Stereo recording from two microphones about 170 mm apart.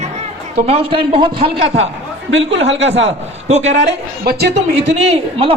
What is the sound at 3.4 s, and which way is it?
Speech, 40° right (ahead or behind).